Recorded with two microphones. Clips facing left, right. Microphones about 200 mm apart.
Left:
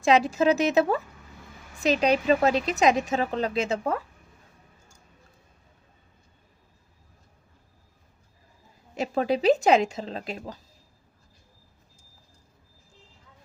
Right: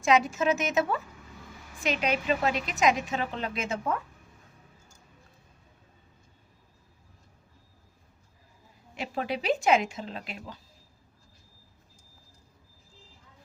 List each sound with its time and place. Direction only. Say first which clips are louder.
0.0 s a woman's voice: left 4 dB; 35° left (ahead or behind)
9.0 s a woman's voice: left 7 dB; 35° left (ahead or behind)